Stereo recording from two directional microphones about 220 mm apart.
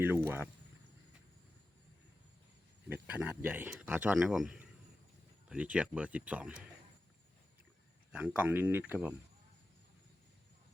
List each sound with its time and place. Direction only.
0.3 s speech: 10° right (ahead or behind)
2.9 s speech: 5° right (ahead or behind)
8.1 s speech: 5° right (ahead or behind)